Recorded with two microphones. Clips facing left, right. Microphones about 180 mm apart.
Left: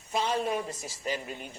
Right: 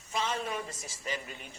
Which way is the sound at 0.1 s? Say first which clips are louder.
Left 5 dB; 40° left (ahead or behind).